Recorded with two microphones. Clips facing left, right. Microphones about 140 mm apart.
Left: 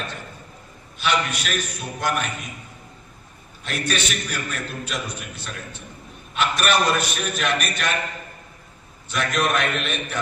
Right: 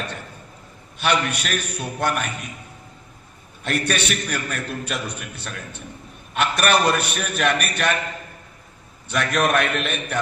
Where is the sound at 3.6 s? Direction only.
60° right (ahead or behind).